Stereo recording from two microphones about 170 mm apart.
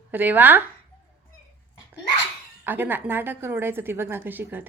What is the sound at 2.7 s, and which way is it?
A woman's voice, 10° right (ahead or behind).